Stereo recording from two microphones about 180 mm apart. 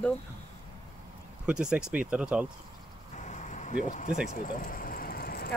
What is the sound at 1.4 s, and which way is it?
Speech, 5° right (ahead or behind).